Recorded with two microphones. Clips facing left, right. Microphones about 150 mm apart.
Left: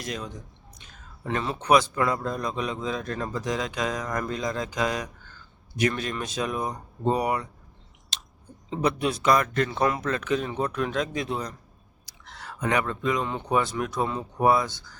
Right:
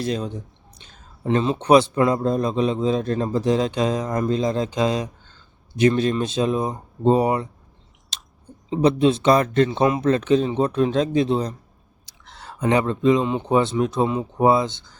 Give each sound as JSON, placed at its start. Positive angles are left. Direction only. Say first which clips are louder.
{"t": 0.0, "sound": "speech", "louder": "right 9 dB", "side_deg": -30}
{"t": 8.1, "sound": "chewing", "louder": "even", "side_deg": 0}
{"t": 8.7, "sound": "speech", "louder": "right 8 dB", "side_deg": -25}